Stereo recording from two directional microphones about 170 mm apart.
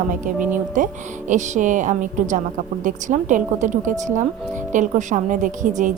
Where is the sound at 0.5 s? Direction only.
50° right (ahead or behind).